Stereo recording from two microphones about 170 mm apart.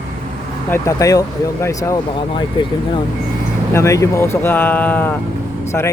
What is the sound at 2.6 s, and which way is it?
Speech, 30° left (ahead or behind).